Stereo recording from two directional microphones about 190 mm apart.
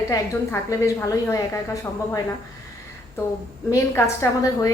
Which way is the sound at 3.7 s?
15° left (ahead or behind).